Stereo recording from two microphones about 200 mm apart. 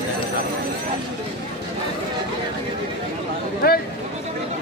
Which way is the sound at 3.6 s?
50° left (ahead or behind).